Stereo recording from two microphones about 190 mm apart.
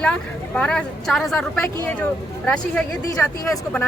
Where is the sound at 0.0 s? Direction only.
5° left (ahead or behind).